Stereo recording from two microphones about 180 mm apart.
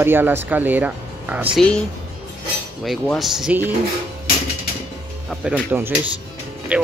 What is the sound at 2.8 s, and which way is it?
Speech, centre (ahead or behind).